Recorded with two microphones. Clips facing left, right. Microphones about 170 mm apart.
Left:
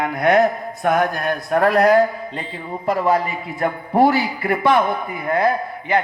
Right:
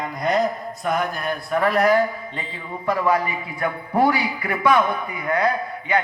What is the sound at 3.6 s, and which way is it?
A man's voice, 40° left (ahead or behind).